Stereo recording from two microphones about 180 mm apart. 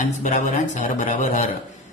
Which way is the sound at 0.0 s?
45° left (ahead or behind).